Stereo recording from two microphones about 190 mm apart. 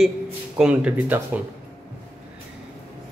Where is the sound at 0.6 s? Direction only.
5° right (ahead or behind).